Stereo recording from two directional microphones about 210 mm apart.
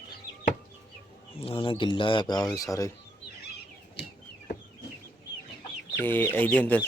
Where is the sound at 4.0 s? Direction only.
50° left (ahead or behind).